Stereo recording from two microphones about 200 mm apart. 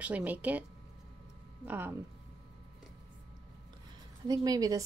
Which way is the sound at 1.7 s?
10° right (ahead or behind).